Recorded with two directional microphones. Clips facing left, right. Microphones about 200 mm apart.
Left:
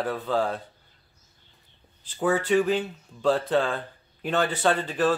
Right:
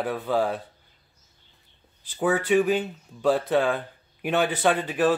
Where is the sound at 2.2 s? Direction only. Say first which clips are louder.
Right 1 dB; 10° right (ahead or behind).